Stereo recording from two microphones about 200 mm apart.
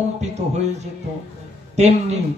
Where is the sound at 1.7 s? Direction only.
35° right (ahead or behind).